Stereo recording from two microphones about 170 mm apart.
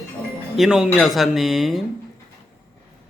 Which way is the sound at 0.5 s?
5° right (ahead or behind).